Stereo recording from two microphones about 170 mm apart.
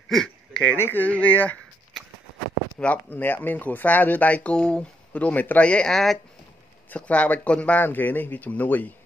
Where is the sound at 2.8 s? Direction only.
10° left (ahead or behind).